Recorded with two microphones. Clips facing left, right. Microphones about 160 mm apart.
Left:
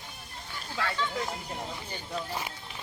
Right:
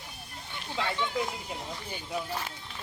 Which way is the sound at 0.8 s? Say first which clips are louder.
Right 1 dB; 20° right (ahead or behind).